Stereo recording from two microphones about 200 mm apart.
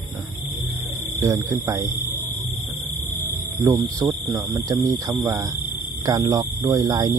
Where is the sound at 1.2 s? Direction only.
15° right (ahead or behind).